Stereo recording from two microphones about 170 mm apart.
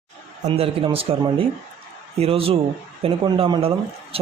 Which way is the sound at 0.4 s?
35° right (ahead or behind).